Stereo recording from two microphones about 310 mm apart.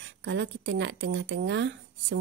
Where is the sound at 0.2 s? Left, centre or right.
Right.